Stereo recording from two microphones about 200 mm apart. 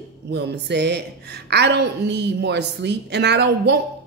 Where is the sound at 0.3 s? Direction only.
55° right (ahead or behind).